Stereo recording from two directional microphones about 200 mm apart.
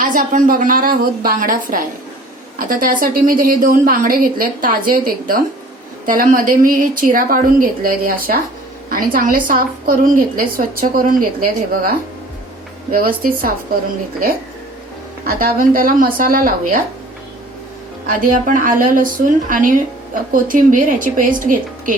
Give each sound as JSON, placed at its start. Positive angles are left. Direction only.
{"t": 0.0, "sound": "a woman's voice", "side_deg": -40}
{"t": 15.3, "sound": "a woman's voice", "side_deg": -45}
{"t": 18.0, "sound": "a woman's voice", "side_deg": -45}